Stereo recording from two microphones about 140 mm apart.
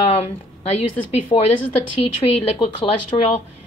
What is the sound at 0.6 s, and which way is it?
Speech, 50° left (ahead or behind).